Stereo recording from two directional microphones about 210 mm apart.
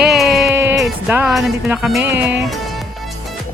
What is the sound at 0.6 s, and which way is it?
Speech, 10° right (ahead or behind).